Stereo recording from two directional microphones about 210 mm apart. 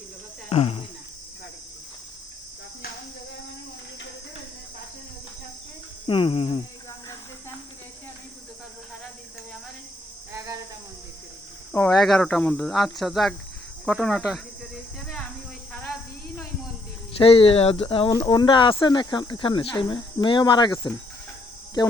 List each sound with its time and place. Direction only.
0.5 s speech: 30° left (ahead or behind)
6.1 s speech: 25° left (ahead or behind)
10.3 s a sound: 15° right (ahead or behind)
11.7 s speech: 5° left (ahead or behind)
17.2 s speech: 25° left (ahead or behind)